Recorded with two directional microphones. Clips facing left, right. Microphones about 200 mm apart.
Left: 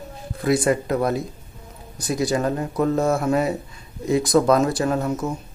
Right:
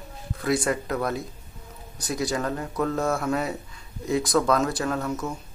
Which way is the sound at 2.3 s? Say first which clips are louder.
Left 5 dB; 20° left (ahead or behind).